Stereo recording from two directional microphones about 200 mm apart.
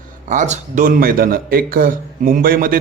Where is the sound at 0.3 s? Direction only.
35° right (ahead or behind).